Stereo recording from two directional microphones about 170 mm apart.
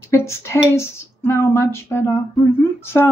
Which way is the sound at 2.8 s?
15° left (ahead or behind).